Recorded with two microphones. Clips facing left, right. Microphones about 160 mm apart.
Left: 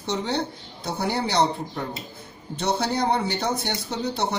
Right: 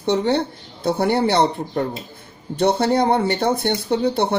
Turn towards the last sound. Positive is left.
turn(degrees=-55)  # may be behind; listen again after turning